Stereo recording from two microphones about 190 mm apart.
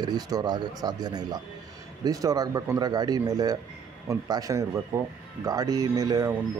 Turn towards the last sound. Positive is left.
turn(degrees=-20)  # may be behind; listen again after turning